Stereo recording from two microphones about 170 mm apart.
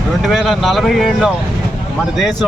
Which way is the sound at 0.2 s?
Centre (ahead or behind).